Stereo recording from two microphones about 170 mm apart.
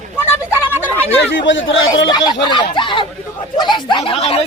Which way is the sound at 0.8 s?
10° left (ahead or behind).